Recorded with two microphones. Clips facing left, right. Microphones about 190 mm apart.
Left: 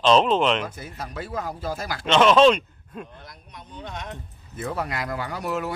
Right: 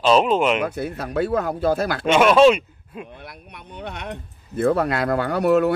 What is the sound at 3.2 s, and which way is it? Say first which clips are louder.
Speech: right 4 dB; 65° right (ahead or behind).